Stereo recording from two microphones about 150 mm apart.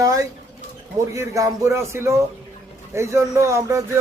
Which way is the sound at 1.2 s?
20° right (ahead or behind).